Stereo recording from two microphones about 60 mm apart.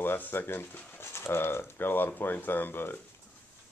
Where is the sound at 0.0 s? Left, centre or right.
Left.